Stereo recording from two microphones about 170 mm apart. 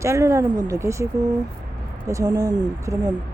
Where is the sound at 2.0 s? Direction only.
20° right (ahead or behind).